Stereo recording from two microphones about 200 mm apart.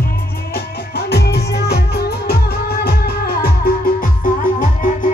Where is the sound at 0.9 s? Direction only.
55° left (ahead or behind).